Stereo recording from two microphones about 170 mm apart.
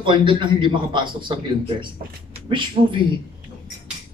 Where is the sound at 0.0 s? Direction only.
30° right (ahead or behind).